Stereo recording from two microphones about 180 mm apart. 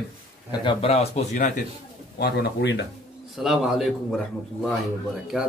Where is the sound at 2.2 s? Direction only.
65° left (ahead or behind).